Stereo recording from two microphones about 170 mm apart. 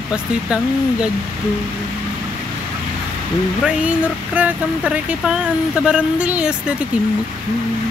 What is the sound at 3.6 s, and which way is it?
Speech, 10° right (ahead or behind).